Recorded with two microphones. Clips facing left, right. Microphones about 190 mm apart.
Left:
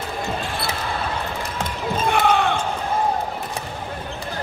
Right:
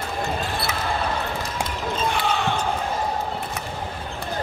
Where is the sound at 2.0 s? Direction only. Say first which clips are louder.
Left 6 dB; 55° left (ahead or behind).